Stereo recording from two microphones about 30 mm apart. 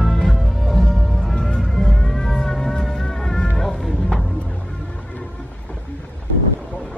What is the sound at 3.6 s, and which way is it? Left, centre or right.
Music, centre.